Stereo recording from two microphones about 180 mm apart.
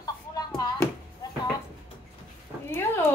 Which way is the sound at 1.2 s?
25° left (ahead or behind).